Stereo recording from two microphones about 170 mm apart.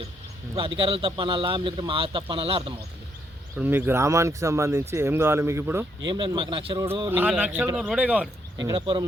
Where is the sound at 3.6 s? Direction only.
10° right (ahead or behind).